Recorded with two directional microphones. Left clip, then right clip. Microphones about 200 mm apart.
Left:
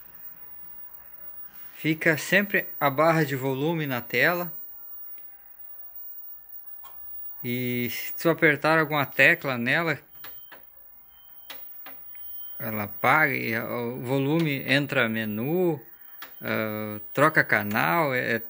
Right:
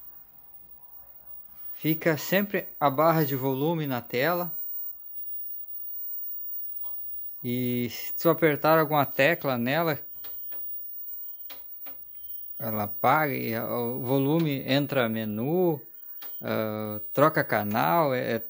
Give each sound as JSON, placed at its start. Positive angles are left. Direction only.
{"t": 1.8, "sound": "speech", "side_deg": -20}
{"t": 7.4, "sound": "speech", "side_deg": -20}
{"t": 12.5, "sound": "speech", "side_deg": -15}